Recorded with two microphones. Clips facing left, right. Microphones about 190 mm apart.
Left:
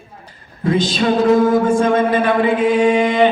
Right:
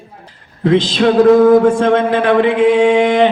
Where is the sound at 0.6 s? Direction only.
65° right (ahead or behind).